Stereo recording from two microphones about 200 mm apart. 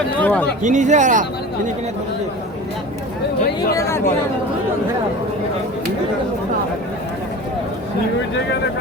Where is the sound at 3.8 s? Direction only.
15° left (ahead or behind).